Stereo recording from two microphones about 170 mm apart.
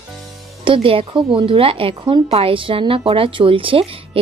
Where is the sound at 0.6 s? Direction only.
30° right (ahead or behind).